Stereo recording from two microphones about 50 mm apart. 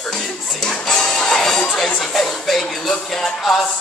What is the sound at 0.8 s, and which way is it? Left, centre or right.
Music, centre.